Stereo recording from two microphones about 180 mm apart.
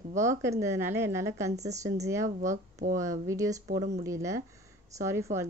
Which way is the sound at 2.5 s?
45° right (ahead or behind).